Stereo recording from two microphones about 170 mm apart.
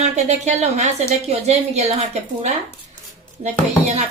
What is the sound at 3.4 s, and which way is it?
Speech, 40° right (ahead or behind).